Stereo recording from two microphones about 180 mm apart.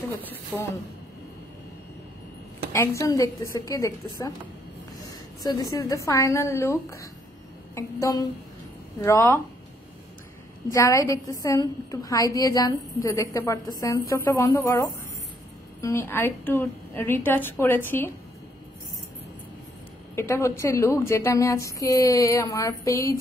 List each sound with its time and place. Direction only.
0.1 s speech: 10° left (ahead or behind)
2.7 s a woman's voice: 15° left (ahead or behind)
10.7 s a woman's voice: 15° left (ahead or behind)
20.2 s a woman's voice: 15° left (ahead or behind)